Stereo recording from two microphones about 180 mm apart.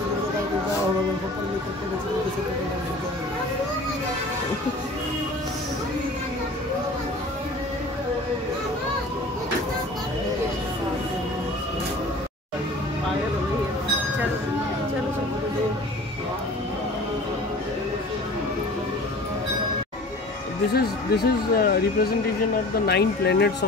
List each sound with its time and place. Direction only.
20.7 s speech: 55° left (ahead or behind)